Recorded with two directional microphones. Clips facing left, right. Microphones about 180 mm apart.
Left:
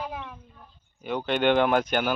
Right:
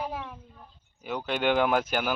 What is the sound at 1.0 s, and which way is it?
Speech, 5° right (ahead or behind).